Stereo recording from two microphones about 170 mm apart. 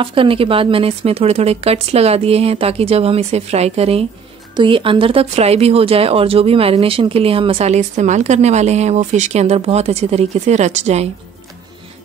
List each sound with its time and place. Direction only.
0.0 s speech: 30° right (ahead or behind)